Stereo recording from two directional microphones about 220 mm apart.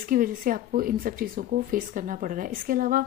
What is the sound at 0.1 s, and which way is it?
Speech, 40° right (ahead or behind).